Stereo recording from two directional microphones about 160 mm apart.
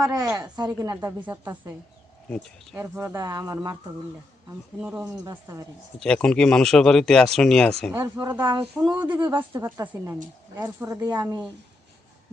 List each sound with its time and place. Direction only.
0.0 s a woman's voice: 20° right (ahead or behind)
1.2 s a woman's voice: 10° right (ahead or behind)
2.7 s a woman's voice: 15° right (ahead or behind)
4.8 s a woman's voice: 10° right (ahead or behind)
5.2 s a woman's voice: 20° right (ahead or behind)
6.0 s speech: 5° left (ahead or behind)
8.2 s a woman's voice: 25° right (ahead or behind)
8.7 s a woman's voice: 5° right (ahead or behind)
9.0 s a woman's voice: 30° right (ahead or behind)
9.6 s a woman's voice: 15° right (ahead or behind)